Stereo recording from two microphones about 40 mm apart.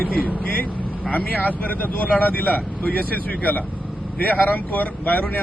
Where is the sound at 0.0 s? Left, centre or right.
Left.